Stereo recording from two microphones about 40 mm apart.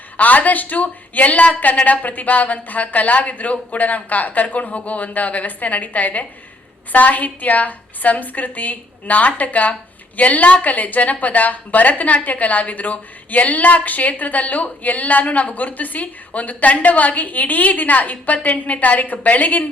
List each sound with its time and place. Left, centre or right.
0.2 s a woman's voice: left